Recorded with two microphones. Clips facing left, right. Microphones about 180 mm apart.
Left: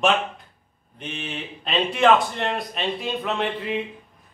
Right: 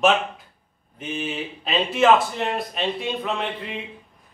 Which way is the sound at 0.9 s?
5° right (ahead or behind).